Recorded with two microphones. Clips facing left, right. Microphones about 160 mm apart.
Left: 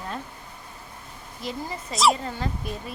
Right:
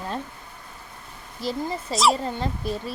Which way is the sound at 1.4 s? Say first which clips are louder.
Right 5 dB; 30° right (ahead or behind).